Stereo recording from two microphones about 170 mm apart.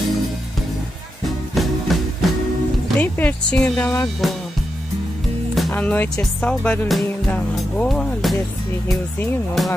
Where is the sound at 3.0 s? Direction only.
10° left (ahead or behind).